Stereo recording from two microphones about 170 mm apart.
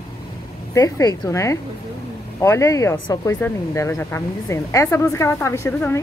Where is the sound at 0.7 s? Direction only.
20° left (ahead or behind).